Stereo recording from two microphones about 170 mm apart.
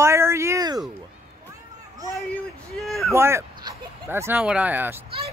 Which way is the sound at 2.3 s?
Centre (ahead or behind).